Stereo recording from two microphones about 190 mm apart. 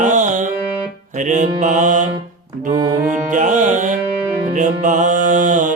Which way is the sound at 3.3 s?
40° right (ahead or behind).